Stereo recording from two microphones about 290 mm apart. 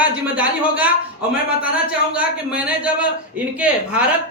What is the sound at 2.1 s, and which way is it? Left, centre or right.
A man's voice, centre.